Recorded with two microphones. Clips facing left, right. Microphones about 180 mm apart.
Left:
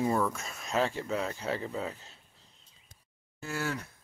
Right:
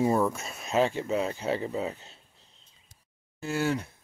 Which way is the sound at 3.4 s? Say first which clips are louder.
Right 6 dB; 25° right (ahead or behind).